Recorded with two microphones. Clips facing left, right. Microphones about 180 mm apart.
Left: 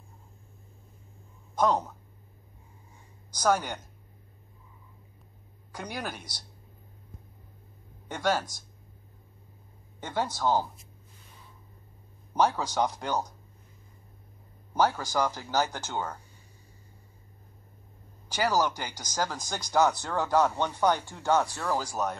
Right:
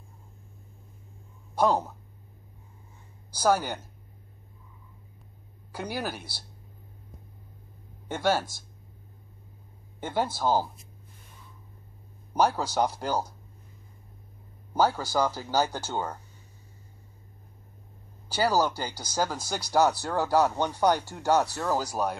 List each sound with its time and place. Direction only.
1.6 s speech: 5° right (ahead or behind)
3.3 s speech: 5° right (ahead or behind)
5.7 s speech: 5° right (ahead or behind)
8.1 s speech: 5° right (ahead or behind)
9.9 s speech: 5° right (ahead or behind)
12.4 s speech: 5° right (ahead or behind)
15.0 s speech: 10° right (ahead or behind)
18.6 s speech: 35° right (ahead or behind)
19.0 s speech: 10° right (ahead or behind)
21.1 s speech: 40° right (ahead or behind)
21.5 s speech: 10° right (ahead or behind)